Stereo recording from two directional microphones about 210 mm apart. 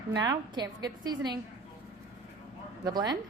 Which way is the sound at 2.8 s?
20° right (ahead or behind).